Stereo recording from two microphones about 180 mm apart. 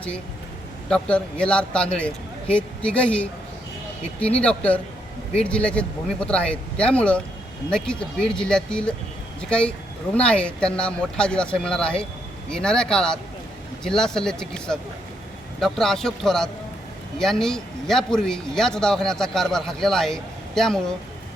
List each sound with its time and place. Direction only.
0.9 s a man's voice: 5° left (ahead or behind)